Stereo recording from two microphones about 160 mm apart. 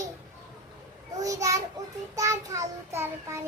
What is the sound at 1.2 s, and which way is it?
A child's voice, 20° right (ahead or behind).